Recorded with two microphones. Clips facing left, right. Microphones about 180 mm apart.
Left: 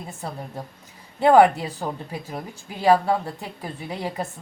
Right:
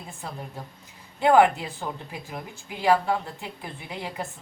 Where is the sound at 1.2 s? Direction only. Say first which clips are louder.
Left 3 dB; 35° left (ahead or behind).